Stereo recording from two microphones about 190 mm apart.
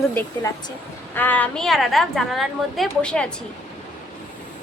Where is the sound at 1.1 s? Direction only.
10° left (ahead or behind).